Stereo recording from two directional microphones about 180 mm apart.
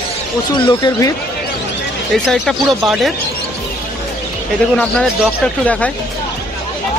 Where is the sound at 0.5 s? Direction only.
25° left (ahead or behind).